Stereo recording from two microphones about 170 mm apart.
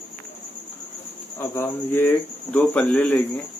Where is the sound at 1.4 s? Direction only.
15° left (ahead or behind).